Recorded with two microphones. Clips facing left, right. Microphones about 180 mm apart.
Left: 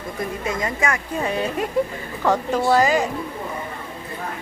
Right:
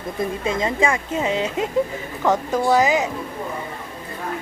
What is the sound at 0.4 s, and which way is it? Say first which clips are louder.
A woman's voice: right 4 dB; 25° right (ahead or behind).